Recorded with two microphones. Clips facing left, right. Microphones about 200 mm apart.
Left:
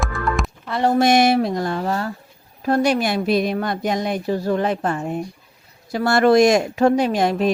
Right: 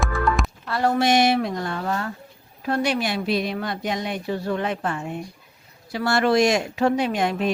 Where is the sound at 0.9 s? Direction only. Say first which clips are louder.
Left 4 dB; 45° left (ahead or behind).